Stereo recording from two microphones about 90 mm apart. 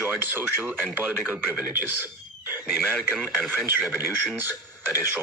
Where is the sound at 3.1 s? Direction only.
10° right (ahead or behind).